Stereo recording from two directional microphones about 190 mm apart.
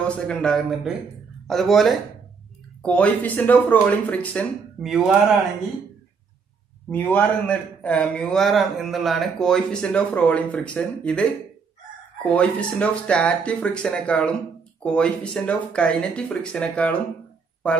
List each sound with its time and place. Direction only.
0.3 s a man's voice: 5° left (ahead or behind)
6.9 s a man's voice: 10° left (ahead or behind)